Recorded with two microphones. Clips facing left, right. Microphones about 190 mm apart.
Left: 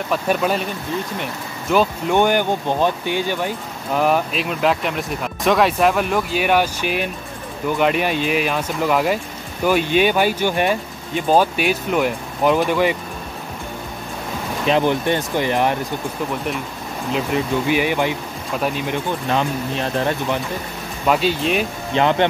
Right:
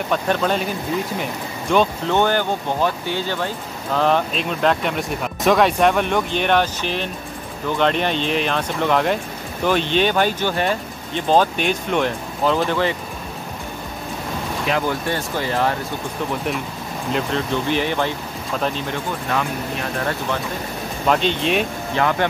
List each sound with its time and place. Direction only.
0.1 s speech: 5° left (ahead or behind)
14.7 s speech: 20° left (ahead or behind)
17.1 s speech: 10° left (ahead or behind)
21.1 s speech: 5° left (ahead or behind)
21.9 s speech: 25° left (ahead or behind)